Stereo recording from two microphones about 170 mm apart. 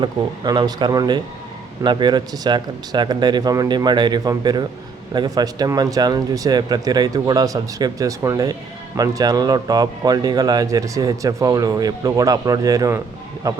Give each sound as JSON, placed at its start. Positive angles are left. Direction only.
{"t": 0.0, "sound": "speech", "side_deg": -25}